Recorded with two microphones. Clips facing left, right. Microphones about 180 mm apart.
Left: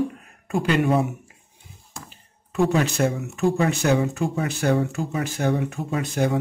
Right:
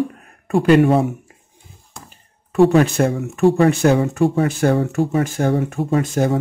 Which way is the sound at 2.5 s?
55° right (ahead or behind).